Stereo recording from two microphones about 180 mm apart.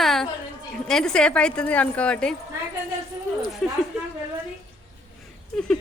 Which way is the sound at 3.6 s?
Centre (ahead or behind).